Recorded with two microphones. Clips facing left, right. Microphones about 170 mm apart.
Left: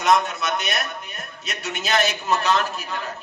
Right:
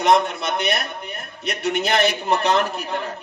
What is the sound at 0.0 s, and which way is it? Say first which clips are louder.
A woman's voice: right 2 dB; 60° right (ahead or behind).